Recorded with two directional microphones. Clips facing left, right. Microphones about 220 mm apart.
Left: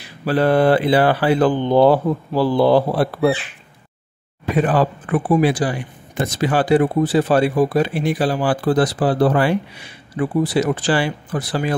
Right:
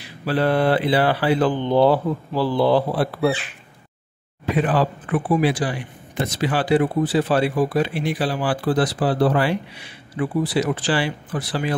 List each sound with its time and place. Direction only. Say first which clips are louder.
0.2 s speech: left 4 dB; 45° left (ahead or behind)
4.6 s speech: left 3 dB; 45° left (ahead or behind)